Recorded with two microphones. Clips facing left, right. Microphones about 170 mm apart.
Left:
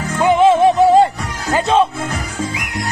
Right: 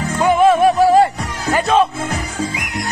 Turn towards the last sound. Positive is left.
turn(degrees=30)  # may be behind; listen again after turning